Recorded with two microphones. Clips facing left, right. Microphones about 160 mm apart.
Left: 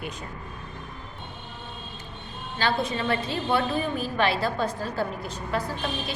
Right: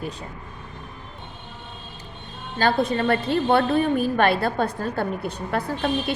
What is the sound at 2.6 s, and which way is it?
A woman's voice, 50° right (ahead or behind).